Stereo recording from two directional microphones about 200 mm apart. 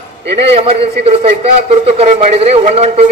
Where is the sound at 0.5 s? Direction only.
30° right (ahead or behind).